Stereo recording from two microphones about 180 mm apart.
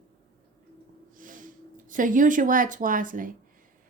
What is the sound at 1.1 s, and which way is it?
A woman's voice, 50° right (ahead or behind).